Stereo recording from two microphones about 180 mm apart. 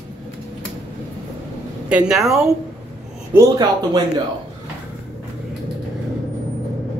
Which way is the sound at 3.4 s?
20° right (ahead or behind).